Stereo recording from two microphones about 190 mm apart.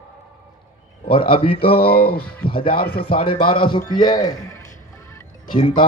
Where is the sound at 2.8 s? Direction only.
55° left (ahead or behind).